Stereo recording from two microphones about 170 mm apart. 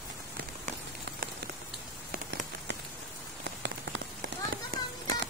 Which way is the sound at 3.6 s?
75° right (ahead or behind).